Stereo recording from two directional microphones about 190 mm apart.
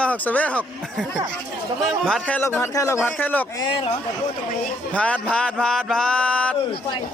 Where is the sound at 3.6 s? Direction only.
25° left (ahead or behind).